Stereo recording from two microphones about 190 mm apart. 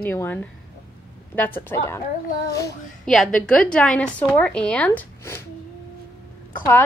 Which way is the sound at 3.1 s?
5° left (ahead or behind).